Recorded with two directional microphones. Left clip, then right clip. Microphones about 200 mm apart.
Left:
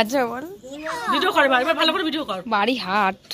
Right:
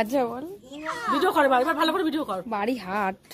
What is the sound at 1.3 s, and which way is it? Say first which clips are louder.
Speech: left 3 dB; 20° right (ahead or behind).